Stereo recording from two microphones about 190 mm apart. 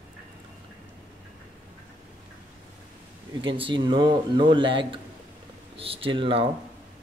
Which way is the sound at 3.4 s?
25° right (ahead or behind).